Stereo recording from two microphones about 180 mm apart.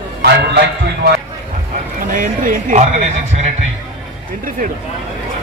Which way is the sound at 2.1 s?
50° right (ahead or behind).